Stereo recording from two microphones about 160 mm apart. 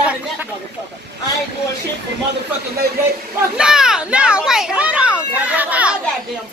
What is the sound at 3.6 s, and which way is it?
Speech, 5° right (ahead or behind).